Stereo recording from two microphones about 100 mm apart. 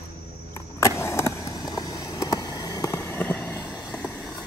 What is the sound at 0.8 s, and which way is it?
Vehicle, 30° left (ahead or behind).